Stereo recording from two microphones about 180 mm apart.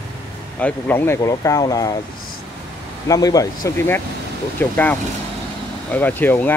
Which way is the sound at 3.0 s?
20° left (ahead or behind).